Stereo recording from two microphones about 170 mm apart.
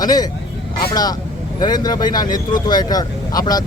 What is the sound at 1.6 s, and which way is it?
Speech, 25° left (ahead or behind).